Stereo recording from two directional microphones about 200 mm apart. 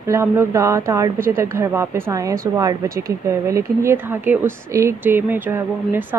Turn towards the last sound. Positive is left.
turn(degrees=-10)  # may be behind; listen again after turning